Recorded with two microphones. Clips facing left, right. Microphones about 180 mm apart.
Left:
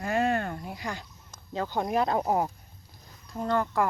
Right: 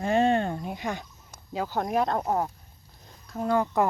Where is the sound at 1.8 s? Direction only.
Centre (ahead or behind).